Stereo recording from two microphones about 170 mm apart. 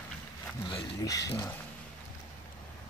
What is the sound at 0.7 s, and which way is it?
Speech, 25° left (ahead or behind).